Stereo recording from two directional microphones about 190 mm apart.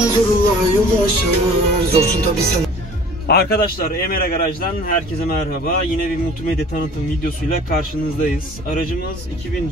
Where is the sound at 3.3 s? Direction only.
55° left (ahead or behind).